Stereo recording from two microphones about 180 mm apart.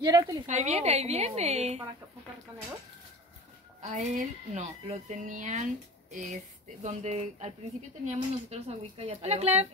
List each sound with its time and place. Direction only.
0.0 s a woman's voice: 20° right (ahead or behind)
0.5 s speech: 40° right (ahead or behind)
3.8 s speech: 45° right (ahead or behind)